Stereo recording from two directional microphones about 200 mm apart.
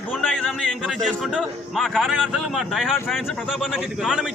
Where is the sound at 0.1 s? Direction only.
Centre (ahead or behind).